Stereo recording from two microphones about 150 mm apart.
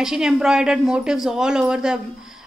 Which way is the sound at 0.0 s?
5° right (ahead or behind).